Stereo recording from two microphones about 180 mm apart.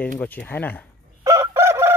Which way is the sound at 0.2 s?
10° left (ahead or behind).